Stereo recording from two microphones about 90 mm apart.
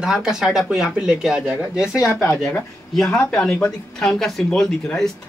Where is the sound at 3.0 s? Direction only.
20° left (ahead or behind).